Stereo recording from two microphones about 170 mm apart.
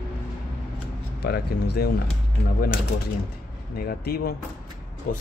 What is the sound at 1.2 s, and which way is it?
Speech, 70° left (ahead or behind).